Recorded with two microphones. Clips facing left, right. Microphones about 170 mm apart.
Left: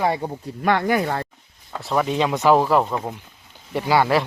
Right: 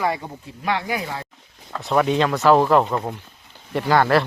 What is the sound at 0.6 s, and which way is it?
Speech, 50° left (ahead or behind).